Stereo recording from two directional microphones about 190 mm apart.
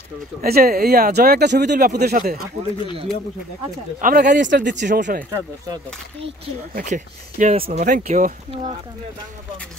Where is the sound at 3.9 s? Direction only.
45° right (ahead or behind).